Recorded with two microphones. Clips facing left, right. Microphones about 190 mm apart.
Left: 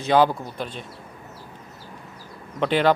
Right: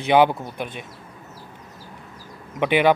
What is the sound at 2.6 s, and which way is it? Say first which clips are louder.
Speech: right 2 dB; 15° right (ahead or behind).